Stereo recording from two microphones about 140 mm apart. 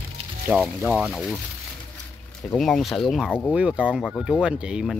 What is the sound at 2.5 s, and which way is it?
Speech, centre (ahead or behind).